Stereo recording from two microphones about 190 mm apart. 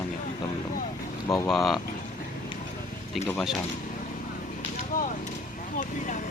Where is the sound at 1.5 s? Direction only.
Centre (ahead or behind).